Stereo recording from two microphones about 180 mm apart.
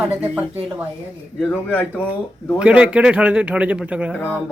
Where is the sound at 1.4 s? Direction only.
10° left (ahead or behind).